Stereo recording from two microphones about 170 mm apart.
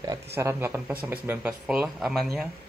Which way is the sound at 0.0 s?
20° right (ahead or behind).